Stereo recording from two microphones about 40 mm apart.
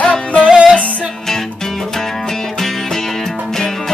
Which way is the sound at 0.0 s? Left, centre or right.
Left.